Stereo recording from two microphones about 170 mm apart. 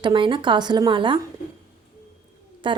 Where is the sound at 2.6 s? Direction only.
30° right (ahead or behind).